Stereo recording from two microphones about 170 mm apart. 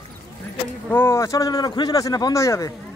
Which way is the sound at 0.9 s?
15° left (ahead or behind).